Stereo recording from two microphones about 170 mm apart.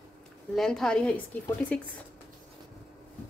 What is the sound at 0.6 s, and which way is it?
A woman's voice, 5° left (ahead or behind).